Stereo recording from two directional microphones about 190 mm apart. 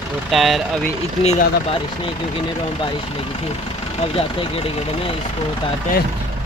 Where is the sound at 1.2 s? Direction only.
30° left (ahead or behind).